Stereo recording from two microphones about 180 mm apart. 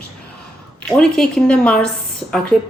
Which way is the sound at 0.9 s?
5° left (ahead or behind).